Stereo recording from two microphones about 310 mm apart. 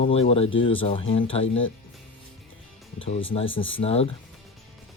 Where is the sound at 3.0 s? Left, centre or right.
Centre.